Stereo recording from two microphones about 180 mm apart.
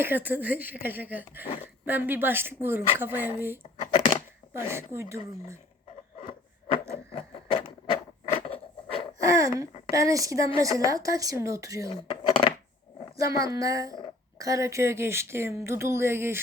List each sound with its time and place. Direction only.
0.0 s speech: 10° right (ahead or behind)
7.1 s a sound: 30° left (ahead or behind)
9.1 s a woman's voice: 20° right (ahead or behind)
11.9 s cutlery: 30° left (ahead or behind)
13.3 s a woman's voice: 20° right (ahead or behind)